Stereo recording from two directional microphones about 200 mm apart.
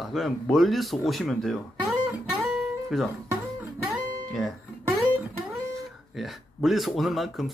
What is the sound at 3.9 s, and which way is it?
Guitar, centre (ahead or behind).